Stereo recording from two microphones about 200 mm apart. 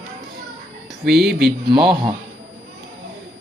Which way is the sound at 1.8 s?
25° right (ahead or behind).